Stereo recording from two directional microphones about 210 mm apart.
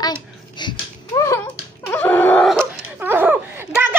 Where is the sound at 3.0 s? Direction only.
10° right (ahead or behind).